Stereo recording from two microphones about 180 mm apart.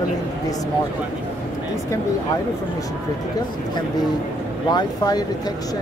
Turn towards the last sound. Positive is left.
turn(degrees=20)  # may be behind; listen again after turning